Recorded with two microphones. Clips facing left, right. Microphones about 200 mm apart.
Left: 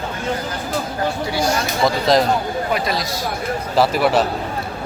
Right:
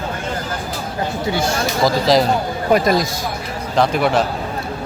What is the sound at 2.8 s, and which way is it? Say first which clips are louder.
Speech: right 6 dB; 45° right (ahead or behind).